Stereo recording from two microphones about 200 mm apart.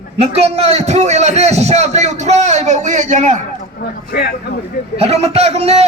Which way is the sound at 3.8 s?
50° left (ahead or behind).